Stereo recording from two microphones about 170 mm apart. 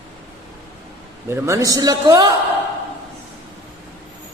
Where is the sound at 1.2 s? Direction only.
15° right (ahead or behind).